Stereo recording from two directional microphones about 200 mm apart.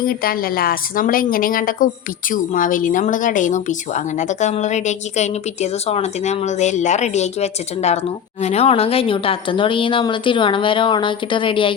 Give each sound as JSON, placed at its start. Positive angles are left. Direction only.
{"t": 0.0, "sound": "a woman's voice", "side_deg": 45}